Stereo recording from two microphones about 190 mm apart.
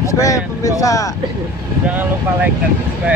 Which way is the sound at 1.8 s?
10° right (ahead or behind).